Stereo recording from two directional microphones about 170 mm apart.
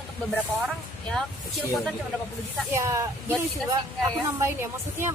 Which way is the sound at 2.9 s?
20° right (ahead or behind).